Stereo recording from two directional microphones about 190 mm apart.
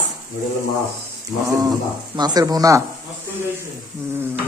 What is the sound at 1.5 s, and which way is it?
Speech, 20° right (ahead or behind).